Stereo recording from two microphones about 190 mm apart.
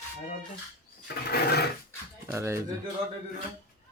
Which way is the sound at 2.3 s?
15° right (ahead or behind).